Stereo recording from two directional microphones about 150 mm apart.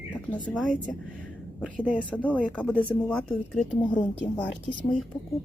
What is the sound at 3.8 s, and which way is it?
Speech, 30° left (ahead or behind).